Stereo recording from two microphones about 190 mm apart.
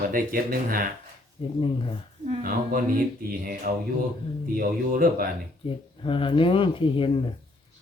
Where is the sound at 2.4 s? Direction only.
50° right (ahead or behind).